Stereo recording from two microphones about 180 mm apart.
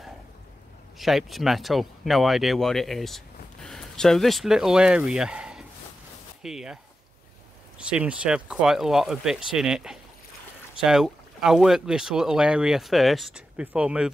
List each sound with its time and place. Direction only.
0.9 s speech: centre (ahead or behind)
7.8 s speech: 5° right (ahead or behind)